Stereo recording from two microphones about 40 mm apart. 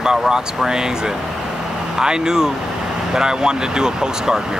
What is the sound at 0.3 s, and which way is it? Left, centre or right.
Speech, centre.